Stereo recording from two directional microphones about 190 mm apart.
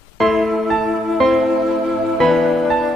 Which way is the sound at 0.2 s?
Centre (ahead or behind).